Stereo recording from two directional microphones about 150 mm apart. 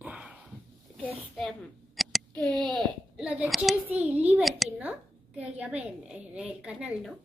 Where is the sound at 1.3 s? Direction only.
5° left (ahead or behind).